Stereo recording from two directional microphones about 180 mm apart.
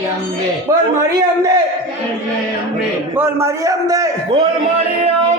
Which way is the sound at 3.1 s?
15° right (ahead or behind).